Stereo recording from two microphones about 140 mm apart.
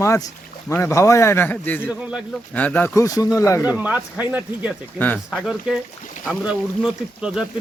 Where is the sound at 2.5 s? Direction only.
10° left (ahead or behind).